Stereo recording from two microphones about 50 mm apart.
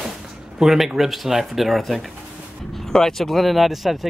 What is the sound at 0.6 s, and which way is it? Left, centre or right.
Speech, centre.